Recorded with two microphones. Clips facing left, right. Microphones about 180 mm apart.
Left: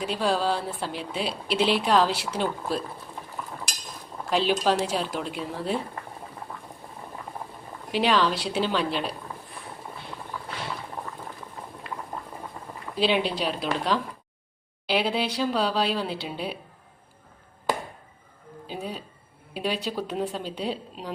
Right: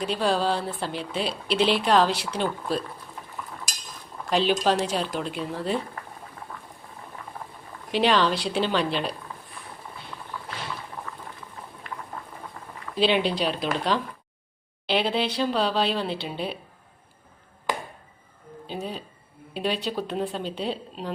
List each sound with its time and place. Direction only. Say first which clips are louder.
0.0 s speech: right 1 dB; 5° left (ahead or behind)
4.3 s speech: right 1 dB; 5° left (ahead or behind)
6.5 s boiling: left 1 dB; 15° left (ahead or behind)
7.9 s speech: right 1 dB; 5° left (ahead or behind)
13.0 s speech: right 2 dB; 5° left (ahead or behind)
18.7 s speech: right 1 dB; 5° left (ahead or behind)